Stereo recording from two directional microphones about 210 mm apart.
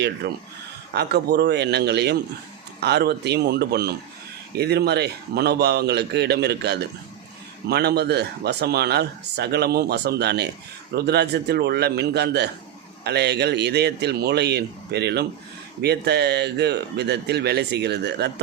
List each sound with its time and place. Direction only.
0.2 s speech: 50° right (ahead or behind)